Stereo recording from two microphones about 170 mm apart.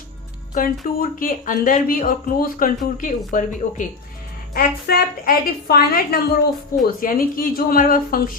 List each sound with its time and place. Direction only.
0.6 s speech: 50° left (ahead or behind)
4.5 s a woman's voice: 60° left (ahead or behind)